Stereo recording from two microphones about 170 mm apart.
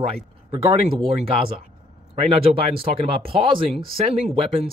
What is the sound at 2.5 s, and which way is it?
Speech, 40° right (ahead or behind).